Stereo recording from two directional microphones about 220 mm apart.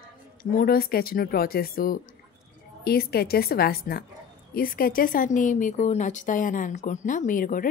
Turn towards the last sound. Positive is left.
turn(degrees=35)  # may be behind; listen again after turning